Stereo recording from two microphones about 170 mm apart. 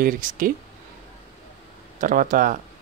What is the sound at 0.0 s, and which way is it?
Speech, 50° right (ahead or behind).